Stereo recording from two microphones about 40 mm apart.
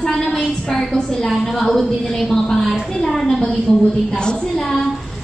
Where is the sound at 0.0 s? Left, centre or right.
Centre.